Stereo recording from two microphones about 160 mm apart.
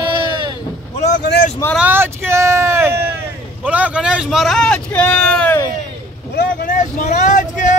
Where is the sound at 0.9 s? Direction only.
45° left (ahead or behind).